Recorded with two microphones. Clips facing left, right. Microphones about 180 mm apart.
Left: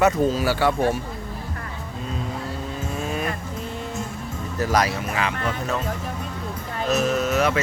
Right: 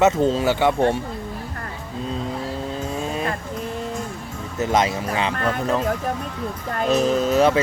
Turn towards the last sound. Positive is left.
turn(degrees=-30)  # may be behind; listen again after turning